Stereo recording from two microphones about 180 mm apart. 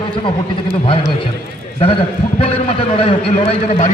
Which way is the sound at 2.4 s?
30° left (ahead or behind).